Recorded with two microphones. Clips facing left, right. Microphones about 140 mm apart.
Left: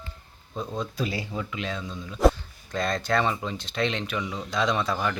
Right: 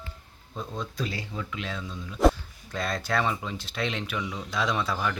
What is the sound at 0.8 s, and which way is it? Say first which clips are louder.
Speech: left 3 dB; 5° left (ahead or behind).